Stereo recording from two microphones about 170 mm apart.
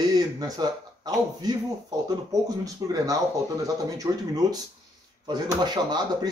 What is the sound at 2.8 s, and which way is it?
Speech, 20° right (ahead or behind).